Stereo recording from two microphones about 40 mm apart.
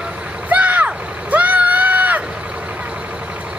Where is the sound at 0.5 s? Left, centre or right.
Right.